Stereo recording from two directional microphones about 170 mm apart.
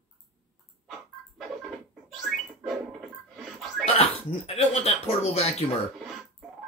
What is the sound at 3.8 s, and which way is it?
Speech, 35° left (ahead or behind).